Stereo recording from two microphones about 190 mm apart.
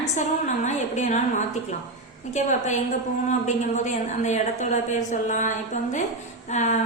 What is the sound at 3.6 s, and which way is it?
A woman's voice, 40° left (ahead or behind).